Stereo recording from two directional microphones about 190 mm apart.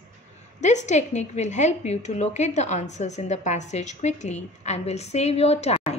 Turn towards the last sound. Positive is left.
turn(degrees=35)  # may be behind; listen again after turning